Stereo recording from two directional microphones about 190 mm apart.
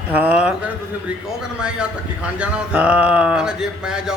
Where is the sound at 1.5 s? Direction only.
5° right (ahead or behind).